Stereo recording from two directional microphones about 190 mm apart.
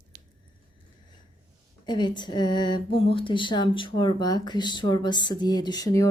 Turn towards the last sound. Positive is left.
turn(degrees=20)  # may be behind; listen again after turning